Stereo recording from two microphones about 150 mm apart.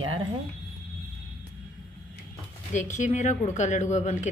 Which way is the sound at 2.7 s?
55° left (ahead or behind).